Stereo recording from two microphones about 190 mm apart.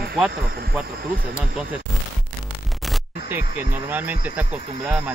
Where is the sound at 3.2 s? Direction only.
15° right (ahead or behind).